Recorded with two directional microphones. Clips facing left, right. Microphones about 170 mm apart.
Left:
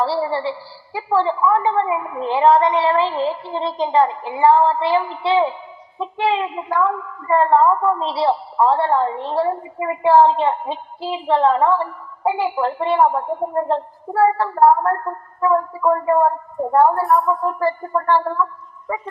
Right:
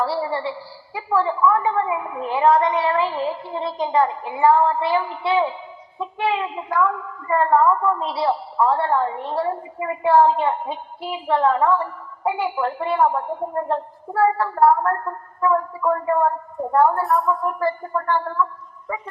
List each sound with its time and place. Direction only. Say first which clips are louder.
0.0 s a woman's voice: left 3 dB; 30° left (ahead or behind)